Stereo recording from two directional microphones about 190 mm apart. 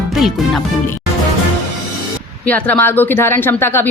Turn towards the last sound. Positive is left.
turn(degrees=10)  # may be behind; listen again after turning